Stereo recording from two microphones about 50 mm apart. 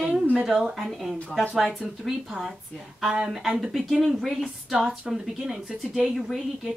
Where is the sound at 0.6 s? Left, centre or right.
Centre.